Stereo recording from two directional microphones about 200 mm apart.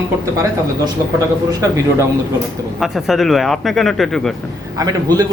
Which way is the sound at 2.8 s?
Centre (ahead or behind).